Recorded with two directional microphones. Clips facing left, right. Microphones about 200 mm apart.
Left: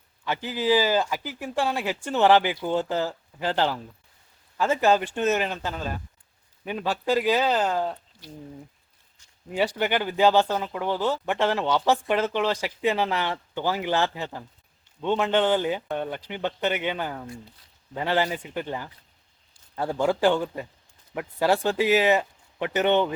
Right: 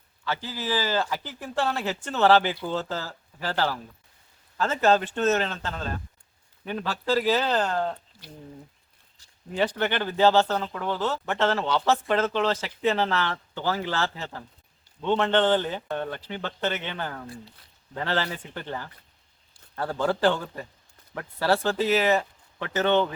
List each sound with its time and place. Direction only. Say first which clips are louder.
0.3 s speech: left 6 dB; 15° left (ahead or behind)
9.6 s speech: left 1 dB; 10° left (ahead or behind)